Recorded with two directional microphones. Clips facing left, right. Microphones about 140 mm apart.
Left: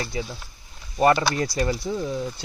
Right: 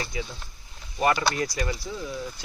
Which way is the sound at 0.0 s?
35° left (ahead or behind).